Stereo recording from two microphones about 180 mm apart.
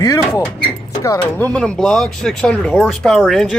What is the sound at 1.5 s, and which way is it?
Speech, 5° left (ahead or behind).